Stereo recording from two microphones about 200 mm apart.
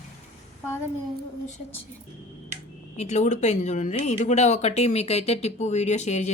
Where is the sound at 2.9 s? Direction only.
35° left (ahead or behind).